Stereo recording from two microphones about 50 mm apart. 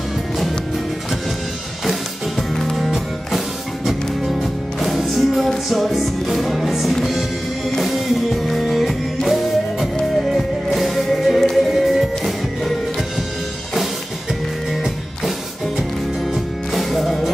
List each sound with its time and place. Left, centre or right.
2.5 s music: centre
16.7 s music: centre